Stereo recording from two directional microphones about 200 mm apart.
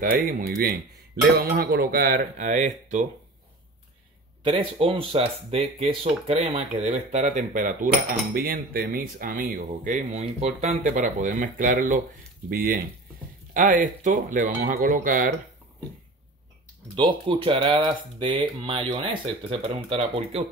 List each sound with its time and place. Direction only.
0.0 s speech: 45° right (ahead or behind)
4.4 s speech: 25° right (ahead or behind); by 15.3 s 40° right (ahead or behind)
16.9 s speech: 25° right (ahead or behind)